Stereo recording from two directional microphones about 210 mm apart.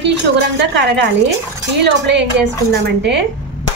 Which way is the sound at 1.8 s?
55° right (ahead or behind).